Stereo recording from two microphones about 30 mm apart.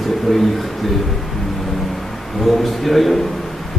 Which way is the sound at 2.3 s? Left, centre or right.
Centre.